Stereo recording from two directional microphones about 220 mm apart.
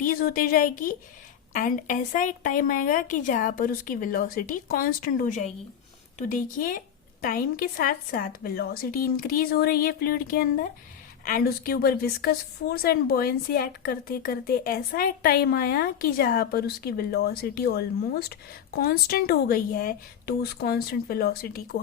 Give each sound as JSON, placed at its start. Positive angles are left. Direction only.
{"t": 0.0, "sound": "a woman's voice", "side_deg": 40}